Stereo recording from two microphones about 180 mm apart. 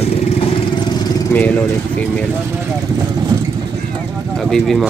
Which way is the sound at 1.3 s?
10° left (ahead or behind).